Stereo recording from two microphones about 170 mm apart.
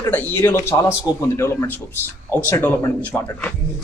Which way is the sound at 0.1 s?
10° left (ahead or behind).